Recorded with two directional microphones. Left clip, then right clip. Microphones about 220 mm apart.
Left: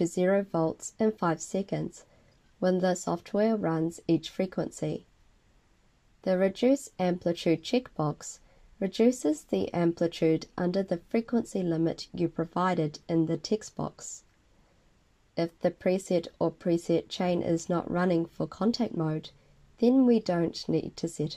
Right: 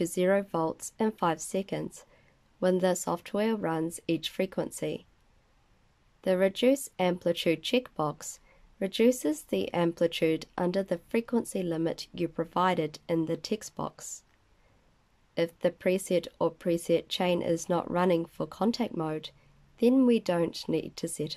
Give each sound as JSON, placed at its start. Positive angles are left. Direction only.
{"t": 0.0, "sound": "speech", "side_deg": -15}
{"t": 6.2, "sound": "speech", "side_deg": -15}
{"t": 15.3, "sound": "speech", "side_deg": -15}